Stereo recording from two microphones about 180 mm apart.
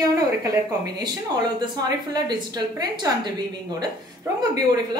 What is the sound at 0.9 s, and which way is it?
A woman's voice, 20° right (ahead or behind).